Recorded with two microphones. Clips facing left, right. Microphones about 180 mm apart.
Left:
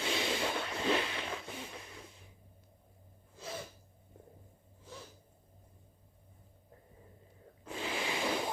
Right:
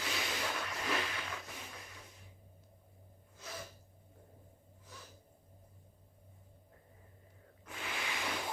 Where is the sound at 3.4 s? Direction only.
30° left (ahead or behind).